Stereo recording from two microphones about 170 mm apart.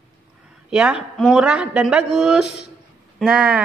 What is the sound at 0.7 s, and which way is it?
A woman's voice, 5° right (ahead or behind).